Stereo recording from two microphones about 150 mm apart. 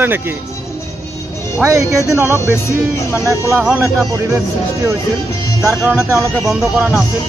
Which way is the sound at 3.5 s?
5° right (ahead or behind).